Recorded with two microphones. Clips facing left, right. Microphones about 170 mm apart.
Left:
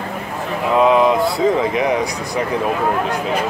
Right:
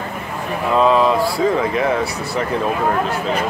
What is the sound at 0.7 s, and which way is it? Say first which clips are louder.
Speech: left 1 dB; 15° left (ahead or behind).